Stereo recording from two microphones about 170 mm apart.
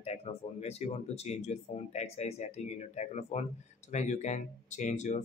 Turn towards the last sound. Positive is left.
turn(degrees=45)  # may be behind; listen again after turning